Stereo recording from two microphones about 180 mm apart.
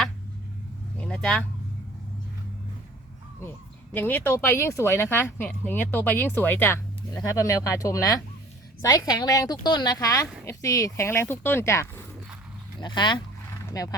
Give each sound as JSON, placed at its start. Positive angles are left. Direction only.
{"t": 0.9, "sound": "vehicle", "side_deg": 5}
{"t": 3.9, "sound": "speech", "side_deg": 10}